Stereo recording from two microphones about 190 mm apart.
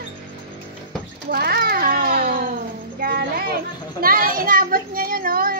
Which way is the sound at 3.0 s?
55° right (ahead or behind).